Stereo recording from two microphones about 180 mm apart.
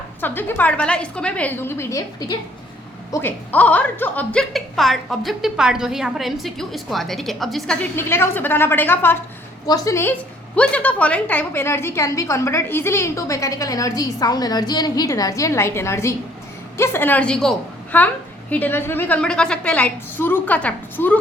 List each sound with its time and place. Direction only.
0.2 s a woman's voice: 10° left (ahead or behind)
7.9 s a woman's voice: 15° left (ahead or behind)